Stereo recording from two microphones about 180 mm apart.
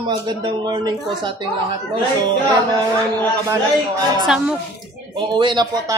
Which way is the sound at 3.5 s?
20° right (ahead or behind).